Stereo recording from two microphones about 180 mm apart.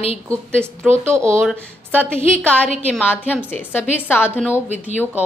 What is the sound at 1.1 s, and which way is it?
Speech, 15° right (ahead or behind).